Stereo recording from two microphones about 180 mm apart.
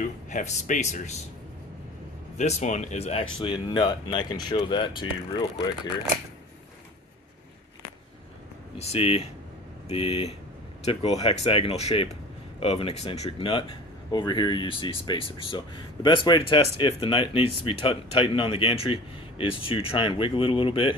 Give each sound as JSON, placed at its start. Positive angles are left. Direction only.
{"t": 0.3, "sound": "speech", "side_deg": 40}
{"t": 2.3, "sound": "speech", "side_deg": 40}
{"t": 8.7, "sound": "speech", "side_deg": 35}